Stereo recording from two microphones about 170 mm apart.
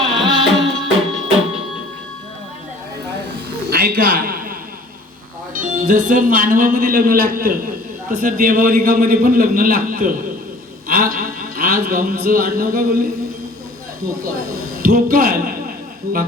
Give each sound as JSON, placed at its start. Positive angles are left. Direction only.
{"t": 0.5, "sound": "music", "side_deg": 0}
{"t": 3.7, "sound": "a sound", "side_deg": -65}
{"t": 5.5, "sound": "a man's voice", "side_deg": -50}
{"t": 14.8, "sound": "a man's voice", "side_deg": -60}